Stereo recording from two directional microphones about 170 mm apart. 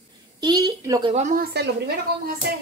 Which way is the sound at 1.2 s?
45° right (ahead or behind).